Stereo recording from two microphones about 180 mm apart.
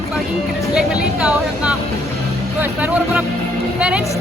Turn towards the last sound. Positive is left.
turn(degrees=-5)  # may be behind; listen again after turning